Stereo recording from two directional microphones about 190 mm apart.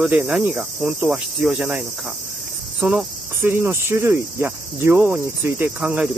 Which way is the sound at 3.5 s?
15° right (ahead or behind).